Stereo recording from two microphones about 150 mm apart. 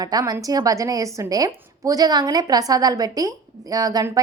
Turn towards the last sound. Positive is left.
turn(degrees=-25)  # may be behind; listen again after turning